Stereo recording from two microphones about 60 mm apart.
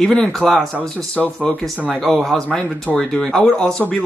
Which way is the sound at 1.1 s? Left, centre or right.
Left.